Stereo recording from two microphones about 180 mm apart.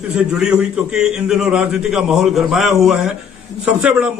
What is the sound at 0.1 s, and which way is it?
A man's voice, 5° right (ahead or behind).